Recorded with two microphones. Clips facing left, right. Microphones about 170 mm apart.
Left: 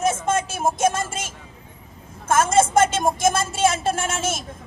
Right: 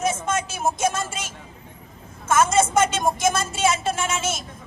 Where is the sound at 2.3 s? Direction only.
50° left (ahead or behind).